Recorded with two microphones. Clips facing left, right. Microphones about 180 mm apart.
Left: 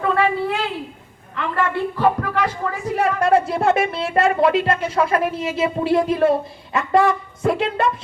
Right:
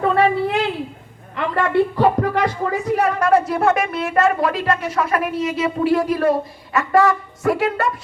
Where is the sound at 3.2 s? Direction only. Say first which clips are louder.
Right 1 dB; 30° left (ahead or behind).